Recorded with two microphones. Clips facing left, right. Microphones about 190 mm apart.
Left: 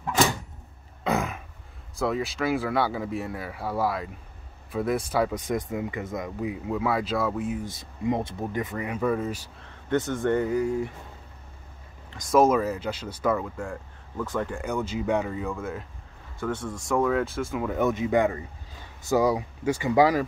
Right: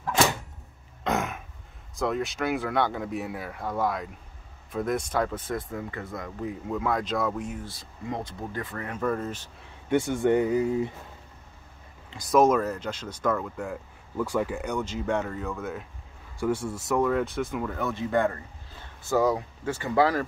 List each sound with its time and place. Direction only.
1.0 s a sound: centre (ahead or behind)
2.0 s speech: centre (ahead or behind)
7.6 s speech: 20° left (ahead or behind)
9.8 s speech: 10° right (ahead or behind)
12.2 s speech: centre (ahead or behind)
16.3 s speech: 10° right (ahead or behind)
17.7 s speech: 20° left (ahead or behind)